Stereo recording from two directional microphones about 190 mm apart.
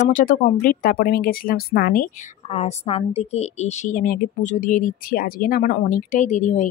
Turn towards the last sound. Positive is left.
turn(degrees=35)  # may be behind; listen again after turning